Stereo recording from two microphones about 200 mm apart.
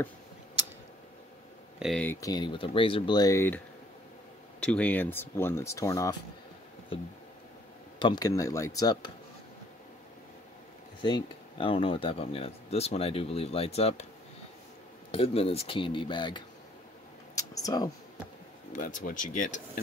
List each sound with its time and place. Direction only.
1.8 s speech: 5° left (ahead or behind)
8.0 s speech: 20° left (ahead or behind)
11.0 s speech: 20° left (ahead or behind)
15.0 s speech: 30° left (ahead or behind)
18.7 s speech: 40° left (ahead or behind)